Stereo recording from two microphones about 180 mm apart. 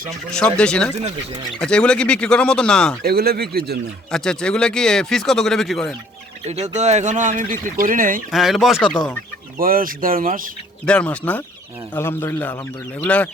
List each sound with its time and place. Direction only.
0.3 s speech: 5° left (ahead or behind)
3.0 s speech: 60° right (ahead or behind)
4.1 s speech: 5° left (ahead or behind)
6.5 s speech: 40° right (ahead or behind)
8.3 s speech: centre (ahead or behind)
9.6 s speech: 50° right (ahead or behind)
10.8 s speech: 5° left (ahead or behind)